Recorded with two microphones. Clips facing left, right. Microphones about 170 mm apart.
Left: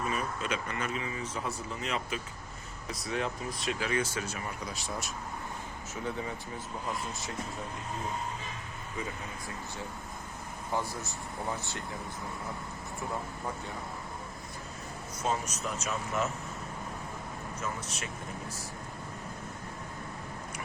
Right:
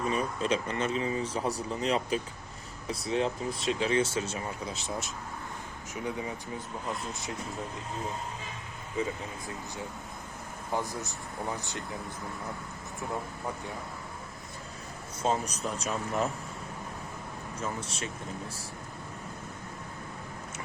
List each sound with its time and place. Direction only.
0.1 s speech: 30° right (ahead or behind); by 6.3 s 15° right (ahead or behind)
10.7 s speech: 15° right (ahead or behind)
15.2 s speech: 30° right (ahead or behind)
17.6 s speech: 30° right (ahead or behind)